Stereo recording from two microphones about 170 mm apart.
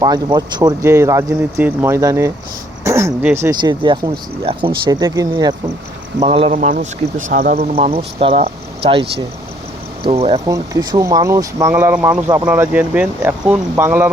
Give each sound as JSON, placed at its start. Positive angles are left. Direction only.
{"t": 0.0, "sound": "speech", "side_deg": -25}
{"t": 3.5, "sound": "speech", "side_deg": -25}
{"t": 4.9, "sound": "speech", "side_deg": -20}
{"t": 6.1, "sound": "speech", "side_deg": -35}
{"t": 6.5, "sound": "speech", "side_deg": -50}
{"t": 7.6, "sound": "speech", "side_deg": -35}
{"t": 10.5, "sound": "speech", "side_deg": -20}